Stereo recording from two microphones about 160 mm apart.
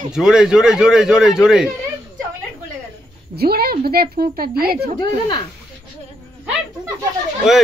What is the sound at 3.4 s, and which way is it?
Speech, 75° right (ahead or behind).